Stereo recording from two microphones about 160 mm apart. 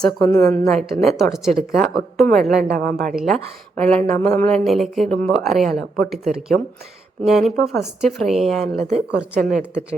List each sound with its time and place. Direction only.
0.2 s a woman's voice: 15° left (ahead or behind)
0.7 s speech: centre (ahead or behind)
2.6 s speech: 70° right (ahead or behind)
2.9 s speech: centre (ahead or behind)
8.7 s speech: 40° right (ahead or behind)
9.3 s speech: 5° right (ahead or behind)